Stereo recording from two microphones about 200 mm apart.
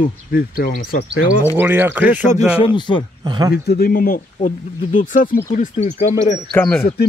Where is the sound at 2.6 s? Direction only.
25° left (ahead or behind).